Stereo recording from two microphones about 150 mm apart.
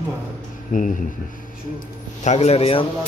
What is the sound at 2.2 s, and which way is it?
Speech, 50° left (ahead or behind).